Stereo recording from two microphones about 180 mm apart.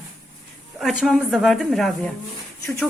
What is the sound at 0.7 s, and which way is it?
A woman's voice, centre (ahead or behind).